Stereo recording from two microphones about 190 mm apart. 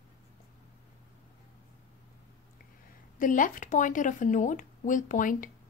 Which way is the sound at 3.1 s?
45° left (ahead or behind).